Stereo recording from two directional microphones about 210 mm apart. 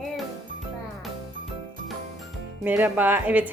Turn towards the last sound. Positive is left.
turn(degrees=-5)  # may be behind; listen again after turning